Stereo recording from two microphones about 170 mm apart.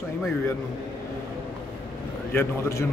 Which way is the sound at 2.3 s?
15° left (ahead or behind).